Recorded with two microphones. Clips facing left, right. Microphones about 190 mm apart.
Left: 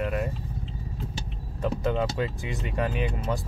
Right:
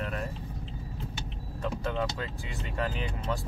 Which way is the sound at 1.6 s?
20° left (ahead or behind).